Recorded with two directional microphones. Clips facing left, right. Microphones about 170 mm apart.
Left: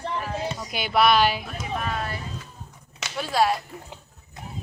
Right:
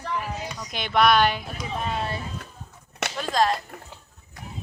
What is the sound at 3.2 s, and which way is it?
Speech, 10° left (ahead or behind).